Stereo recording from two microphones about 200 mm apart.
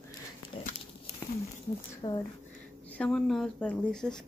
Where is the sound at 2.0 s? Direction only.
20° left (ahead or behind).